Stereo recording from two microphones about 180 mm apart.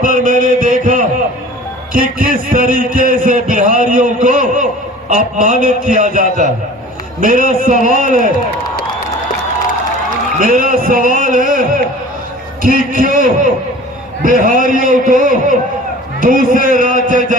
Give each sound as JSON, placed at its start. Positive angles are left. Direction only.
{"t": 0.0, "sound": "heart murmur", "side_deg": -50}
{"t": 1.9, "sound": "a man's voice", "side_deg": -50}
{"t": 10.3, "sound": "a man's voice", "side_deg": -50}